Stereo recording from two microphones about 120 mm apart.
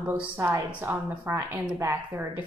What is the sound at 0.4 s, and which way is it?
Speech, 25° right (ahead or behind).